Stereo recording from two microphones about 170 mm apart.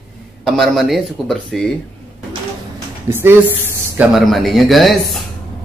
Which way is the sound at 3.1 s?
15° right (ahead or behind).